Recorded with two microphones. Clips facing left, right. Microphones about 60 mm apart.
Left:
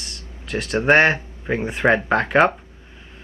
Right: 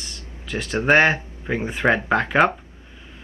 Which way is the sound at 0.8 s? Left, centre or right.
Centre.